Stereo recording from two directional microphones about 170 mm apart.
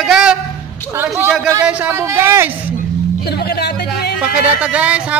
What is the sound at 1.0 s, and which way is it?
Speech, 10° right (ahead or behind).